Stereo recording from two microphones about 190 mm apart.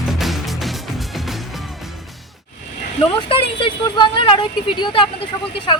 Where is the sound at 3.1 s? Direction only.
25° left (ahead or behind).